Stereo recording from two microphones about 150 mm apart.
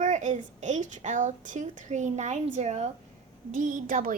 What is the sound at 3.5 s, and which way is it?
Speech, 60° right (ahead or behind).